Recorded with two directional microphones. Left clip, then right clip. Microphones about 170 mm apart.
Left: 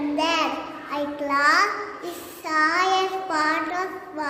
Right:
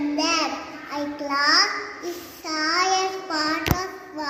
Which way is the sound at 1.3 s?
20° left (ahead or behind).